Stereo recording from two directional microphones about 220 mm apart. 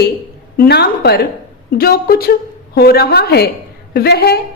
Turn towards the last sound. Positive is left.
turn(degrees=45)  # may be behind; listen again after turning